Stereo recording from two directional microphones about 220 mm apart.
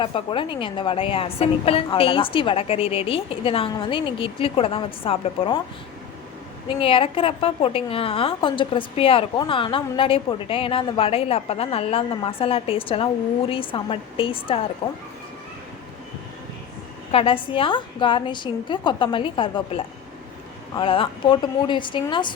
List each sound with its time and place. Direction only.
0.0 s a woman's voice: 25° left (ahead or behind)
6.7 s a woman's voice: 25° left (ahead or behind)
17.1 s a woman's voice: 25° left (ahead or behind)